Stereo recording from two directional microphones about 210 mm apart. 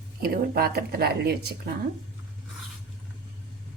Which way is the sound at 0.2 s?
45° right (ahead or behind).